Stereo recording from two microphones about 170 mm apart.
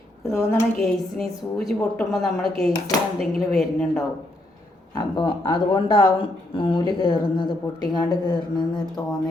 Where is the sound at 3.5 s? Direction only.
5° left (ahead or behind).